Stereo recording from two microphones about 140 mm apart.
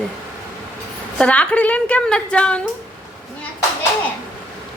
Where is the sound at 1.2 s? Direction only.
10° left (ahead or behind).